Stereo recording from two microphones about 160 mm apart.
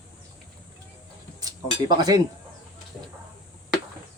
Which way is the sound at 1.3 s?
25° right (ahead or behind).